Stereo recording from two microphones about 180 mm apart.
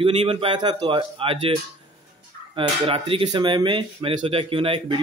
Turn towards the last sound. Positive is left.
turn(degrees=-30)  # may be behind; listen again after turning